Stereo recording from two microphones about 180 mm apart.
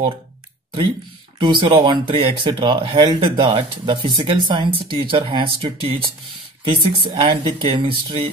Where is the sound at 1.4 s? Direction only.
25° right (ahead or behind).